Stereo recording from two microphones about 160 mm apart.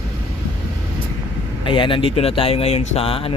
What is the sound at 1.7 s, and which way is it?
Speech, 30° left (ahead or behind).